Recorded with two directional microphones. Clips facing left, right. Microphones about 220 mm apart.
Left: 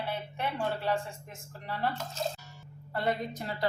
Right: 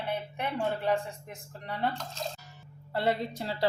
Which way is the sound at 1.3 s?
20° right (ahead or behind).